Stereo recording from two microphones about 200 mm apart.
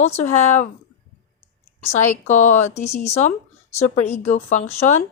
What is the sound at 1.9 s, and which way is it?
Speech, 35° left (ahead or behind).